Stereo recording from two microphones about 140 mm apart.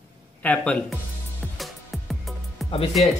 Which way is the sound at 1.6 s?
Centre (ahead or behind).